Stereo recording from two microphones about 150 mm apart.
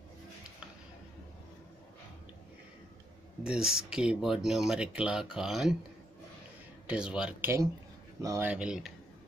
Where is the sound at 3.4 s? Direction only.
5° right (ahead or behind).